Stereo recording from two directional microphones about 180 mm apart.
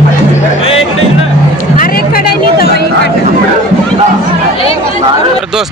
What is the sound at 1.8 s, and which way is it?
Vehicle, 55° left (ahead or behind).